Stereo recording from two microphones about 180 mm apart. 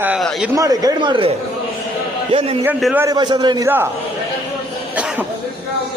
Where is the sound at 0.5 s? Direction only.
20° right (ahead or behind).